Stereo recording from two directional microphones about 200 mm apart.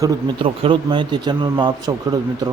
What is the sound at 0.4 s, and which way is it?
Speech, 25° right (ahead or behind).